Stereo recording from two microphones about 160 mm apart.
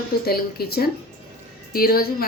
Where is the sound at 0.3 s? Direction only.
75° left (ahead or behind).